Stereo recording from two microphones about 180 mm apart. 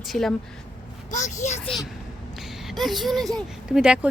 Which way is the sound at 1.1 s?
40° left (ahead or behind).